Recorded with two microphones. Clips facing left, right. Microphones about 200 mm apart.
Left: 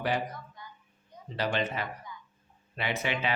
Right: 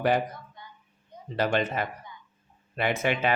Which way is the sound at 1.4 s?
50° right (ahead or behind).